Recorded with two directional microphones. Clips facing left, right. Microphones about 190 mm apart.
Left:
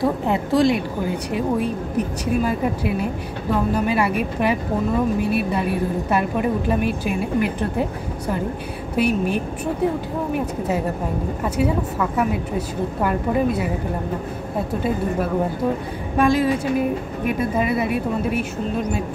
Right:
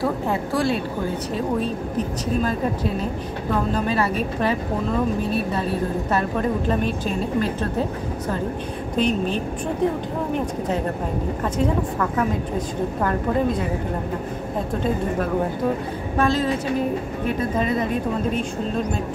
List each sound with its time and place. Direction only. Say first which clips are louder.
0.0 s a woman's voice: left 2 dB; 20° left (ahead or behind)
8.9 s speech: left 2 dB; 10° left (ahead or behind)
11.4 s speech: left 1 dB; 10° left (ahead or behind)
16.2 s speech: left 3 dB; 10° left (ahead or behind)